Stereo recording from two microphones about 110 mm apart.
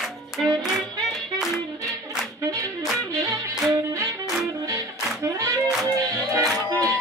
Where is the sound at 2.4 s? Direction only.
30° right (ahead or behind).